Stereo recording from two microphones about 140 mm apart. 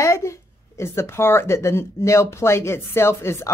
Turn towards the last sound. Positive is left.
turn(degrees=20)  # may be behind; listen again after turning